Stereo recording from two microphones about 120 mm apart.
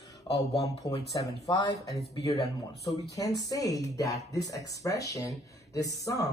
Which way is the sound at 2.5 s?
30° left (ahead or behind).